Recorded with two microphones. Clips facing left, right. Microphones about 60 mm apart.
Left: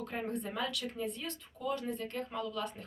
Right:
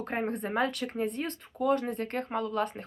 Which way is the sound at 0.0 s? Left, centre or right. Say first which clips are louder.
Right 6 dB; right.